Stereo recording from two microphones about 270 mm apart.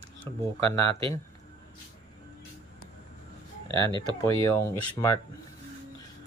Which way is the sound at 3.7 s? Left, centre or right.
Centre.